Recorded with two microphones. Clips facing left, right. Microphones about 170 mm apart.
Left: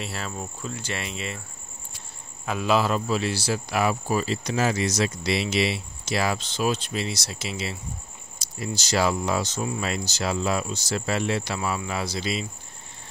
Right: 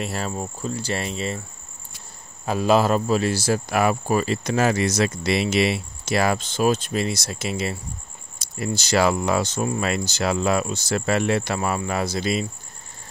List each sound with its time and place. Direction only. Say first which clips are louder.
0.0 s cricket: right 5 dB; 40° right (ahead or behind)
2.4 s speech: right 4 dB; 40° right (ahead or behind)